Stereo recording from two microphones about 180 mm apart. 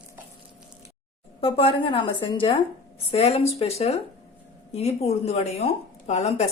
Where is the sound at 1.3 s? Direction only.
30° left (ahead or behind).